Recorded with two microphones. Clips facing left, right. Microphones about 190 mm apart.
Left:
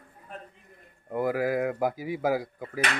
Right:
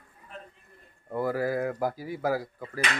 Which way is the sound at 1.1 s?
15° left (ahead or behind).